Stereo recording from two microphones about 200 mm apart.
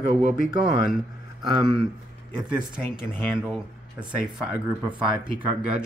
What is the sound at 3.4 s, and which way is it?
Speech, 5° right (ahead or behind).